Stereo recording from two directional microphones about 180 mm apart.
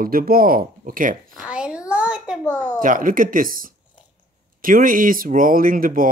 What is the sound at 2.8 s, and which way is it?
Speech, 50° right (ahead or behind).